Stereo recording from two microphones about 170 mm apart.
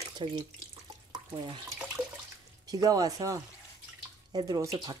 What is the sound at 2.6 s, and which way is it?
Speech, 20° right (ahead or behind).